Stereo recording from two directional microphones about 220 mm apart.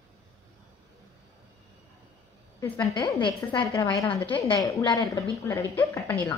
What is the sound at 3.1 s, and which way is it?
A woman's voice, 20° left (ahead or behind).